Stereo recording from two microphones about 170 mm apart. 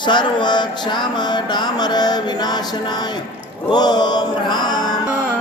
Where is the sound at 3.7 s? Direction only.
25° left (ahead or behind).